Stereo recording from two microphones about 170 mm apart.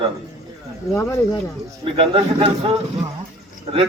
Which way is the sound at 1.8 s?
30° right (ahead or behind).